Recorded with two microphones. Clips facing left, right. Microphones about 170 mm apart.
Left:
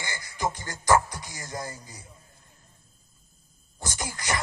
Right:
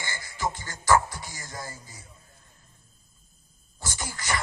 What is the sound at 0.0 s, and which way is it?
Music, 15° left (ahead or behind).